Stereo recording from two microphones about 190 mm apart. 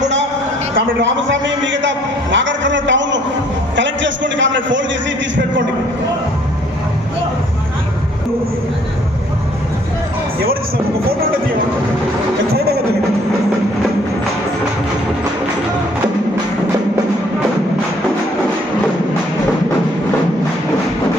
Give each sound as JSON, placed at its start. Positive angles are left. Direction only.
{"t": 1.3, "sound": "a man's voice", "side_deg": -75}
{"t": 12.5, "sound": "music", "side_deg": -55}